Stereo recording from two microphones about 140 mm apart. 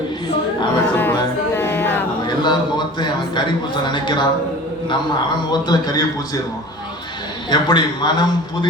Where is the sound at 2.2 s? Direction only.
30° left (ahead or behind).